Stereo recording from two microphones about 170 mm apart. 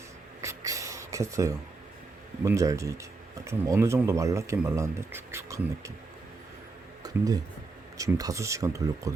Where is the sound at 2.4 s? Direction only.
20° right (ahead or behind).